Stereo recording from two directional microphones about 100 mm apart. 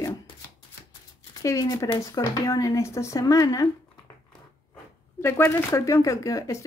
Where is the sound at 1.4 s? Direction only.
35° left (ahead or behind).